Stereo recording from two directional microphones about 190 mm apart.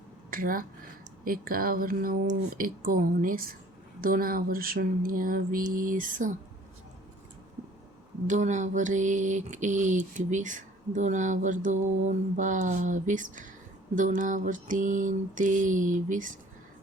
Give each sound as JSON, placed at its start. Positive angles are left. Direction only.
{"t": 0.3, "sound": "speech", "side_deg": -45}
{"t": 1.2, "sound": "mantra", "side_deg": -50}
{"t": 8.3, "sound": "a sound", "side_deg": -40}
{"t": 13.9, "sound": "mantra", "side_deg": -40}